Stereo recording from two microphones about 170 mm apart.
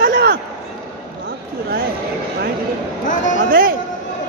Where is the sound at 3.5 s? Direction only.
55° right (ahead or behind).